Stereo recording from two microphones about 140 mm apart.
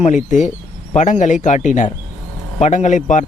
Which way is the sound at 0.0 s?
60° left (ahead or behind).